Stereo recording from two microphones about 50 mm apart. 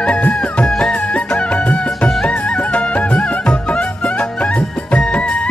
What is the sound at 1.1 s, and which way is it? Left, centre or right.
Music, left.